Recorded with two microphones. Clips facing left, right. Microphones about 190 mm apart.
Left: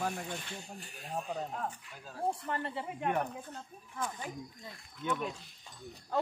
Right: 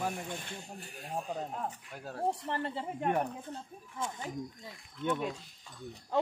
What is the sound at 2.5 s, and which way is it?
Speech, 30° right (ahead or behind).